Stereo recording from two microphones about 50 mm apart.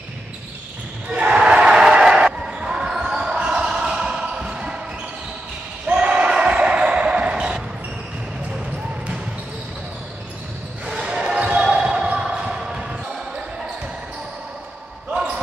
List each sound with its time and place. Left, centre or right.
1.3 s basketball bounce: centre
5.9 s basketball bounce: right
11.0 s basketball bounce: centre